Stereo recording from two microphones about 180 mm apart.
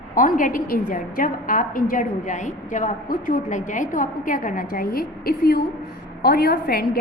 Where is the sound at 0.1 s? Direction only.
50° left (ahead or behind).